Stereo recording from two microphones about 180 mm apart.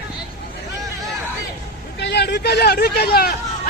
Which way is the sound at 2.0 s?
70° left (ahead or behind).